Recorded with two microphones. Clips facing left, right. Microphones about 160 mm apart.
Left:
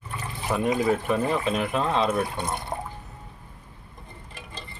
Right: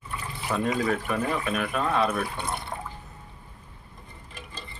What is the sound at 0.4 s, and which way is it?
Speech, 20° left (ahead or behind).